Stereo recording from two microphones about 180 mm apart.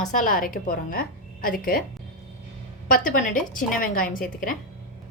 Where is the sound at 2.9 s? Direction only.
45° left (ahead or behind).